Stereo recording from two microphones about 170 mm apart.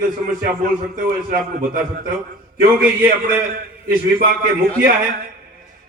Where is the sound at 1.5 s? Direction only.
55° right (ahead or behind).